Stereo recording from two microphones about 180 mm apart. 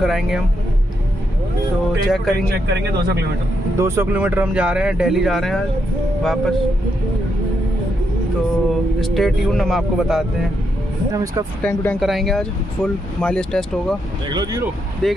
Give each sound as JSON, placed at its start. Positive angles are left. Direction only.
{"t": 0.0, "sound": "speech", "side_deg": 0}
{"t": 1.9, "sound": "speech", "side_deg": 0}
{"t": 2.7, "sound": "speech", "side_deg": -65}
{"t": 3.7, "sound": "speech", "side_deg": -15}
{"t": 9.0, "sound": "speech", "side_deg": 0}
{"t": 11.6, "sound": "speech", "side_deg": 10}
{"t": 14.3, "sound": "speech", "side_deg": -20}
{"t": 15.0, "sound": "speech", "side_deg": 0}